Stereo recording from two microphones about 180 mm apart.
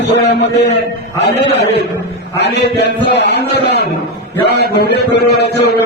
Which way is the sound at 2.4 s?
70° left (ahead or behind).